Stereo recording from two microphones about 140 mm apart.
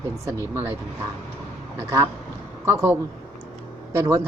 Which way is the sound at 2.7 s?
20° right (ahead or behind).